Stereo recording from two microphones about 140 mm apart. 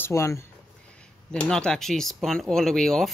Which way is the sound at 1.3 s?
5° left (ahead or behind).